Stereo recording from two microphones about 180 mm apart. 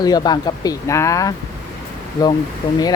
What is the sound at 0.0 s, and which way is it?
Speech, 20° left (ahead or behind).